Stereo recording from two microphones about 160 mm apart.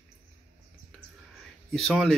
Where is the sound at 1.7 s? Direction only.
Centre (ahead or behind).